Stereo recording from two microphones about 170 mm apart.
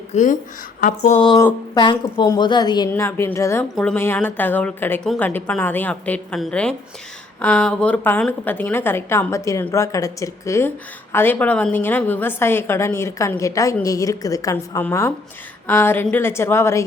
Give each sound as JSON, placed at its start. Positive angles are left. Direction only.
{"t": 0.1, "sound": "speech", "side_deg": 45}
{"t": 0.8, "sound": "a sound", "side_deg": 50}
{"t": 1.2, "sound": "a woman's voice", "side_deg": 25}
{"t": 2.9, "sound": "a woman's voice", "side_deg": 15}